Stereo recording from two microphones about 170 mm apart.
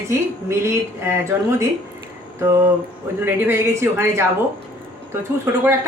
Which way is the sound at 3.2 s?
15° right (ahead or behind).